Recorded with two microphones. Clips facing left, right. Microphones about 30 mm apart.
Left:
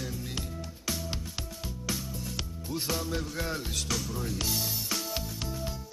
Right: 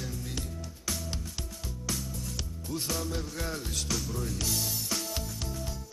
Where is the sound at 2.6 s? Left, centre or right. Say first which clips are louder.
Left 1 dB; centre.